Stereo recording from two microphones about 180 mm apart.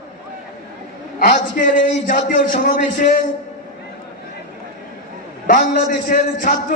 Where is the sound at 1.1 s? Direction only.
45° left (ahead or behind).